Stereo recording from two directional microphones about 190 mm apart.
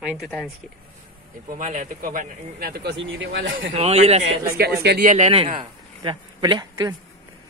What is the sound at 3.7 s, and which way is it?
Speech, 35° right (ahead or behind).